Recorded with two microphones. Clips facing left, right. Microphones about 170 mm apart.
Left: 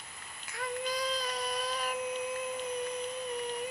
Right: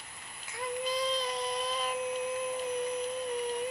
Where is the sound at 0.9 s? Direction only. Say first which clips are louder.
Right 2 dB; 25° right (ahead or behind).